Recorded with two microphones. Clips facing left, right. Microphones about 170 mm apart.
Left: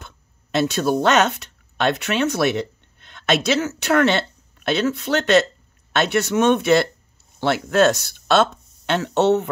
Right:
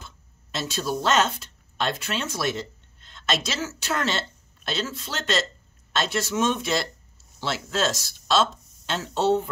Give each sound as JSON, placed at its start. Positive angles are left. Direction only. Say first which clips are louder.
{"t": 0.0, "sound": "speech", "louder": "left 3 dB", "side_deg": 60}